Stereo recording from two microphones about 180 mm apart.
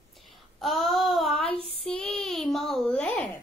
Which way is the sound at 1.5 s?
30° right (ahead or behind).